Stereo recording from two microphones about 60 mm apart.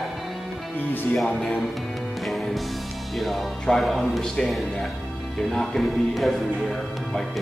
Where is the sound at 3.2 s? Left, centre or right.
Centre.